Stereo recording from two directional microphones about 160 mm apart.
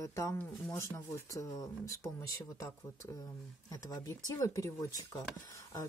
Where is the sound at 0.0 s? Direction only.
20° left (ahead or behind).